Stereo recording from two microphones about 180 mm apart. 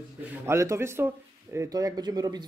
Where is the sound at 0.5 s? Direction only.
15° right (ahead or behind).